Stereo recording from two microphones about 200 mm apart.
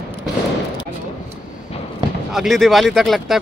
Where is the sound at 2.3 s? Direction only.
Centre (ahead or behind).